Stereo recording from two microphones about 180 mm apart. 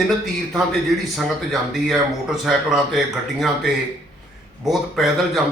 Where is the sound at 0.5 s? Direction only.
Centre (ahead or behind).